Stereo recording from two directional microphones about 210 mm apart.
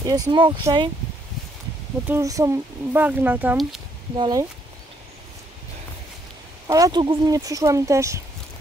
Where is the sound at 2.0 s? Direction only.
15° right (ahead or behind).